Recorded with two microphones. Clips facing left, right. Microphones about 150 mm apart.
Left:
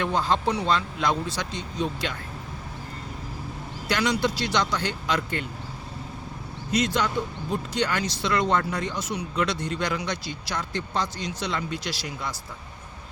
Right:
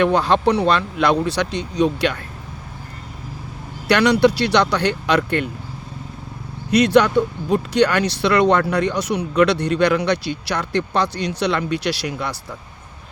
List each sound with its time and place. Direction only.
0.0 s speech: 70° right (ahead or behind)
3.8 s speech: 65° right (ahead or behind)
6.7 s speech: 70° right (ahead or behind)